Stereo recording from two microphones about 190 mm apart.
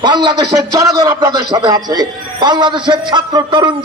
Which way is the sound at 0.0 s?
20° right (ahead or behind).